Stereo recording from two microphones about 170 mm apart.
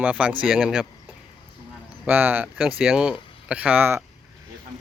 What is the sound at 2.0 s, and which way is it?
Speech, 10° right (ahead or behind).